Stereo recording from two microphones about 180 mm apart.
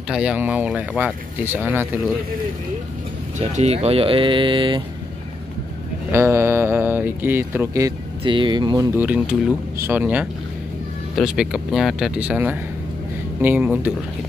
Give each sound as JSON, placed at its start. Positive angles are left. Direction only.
{"t": 0.1, "sound": "speech", "side_deg": -5}
{"t": 3.3, "sound": "speech", "side_deg": -40}
{"t": 6.1, "sound": "speech", "side_deg": -15}
{"t": 8.2, "sound": "speech", "side_deg": -25}
{"t": 9.0, "sound": "speech", "side_deg": -10}